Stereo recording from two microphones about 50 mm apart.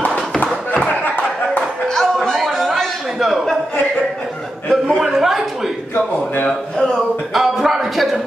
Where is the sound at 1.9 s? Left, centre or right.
Centre.